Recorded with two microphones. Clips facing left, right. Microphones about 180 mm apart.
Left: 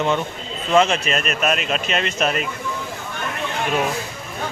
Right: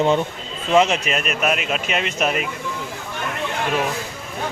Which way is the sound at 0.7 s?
15° right (ahead or behind).